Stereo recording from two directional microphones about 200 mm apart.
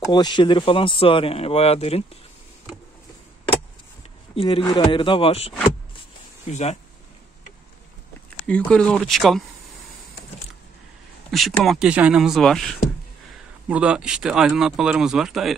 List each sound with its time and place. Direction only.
0.1 s speech: 20° left (ahead or behind)
4.4 s speech: 25° left (ahead or behind)
6.5 s speech: 35° left (ahead or behind)
8.5 s speech: 5° left (ahead or behind)
11.2 s speech: centre (ahead or behind)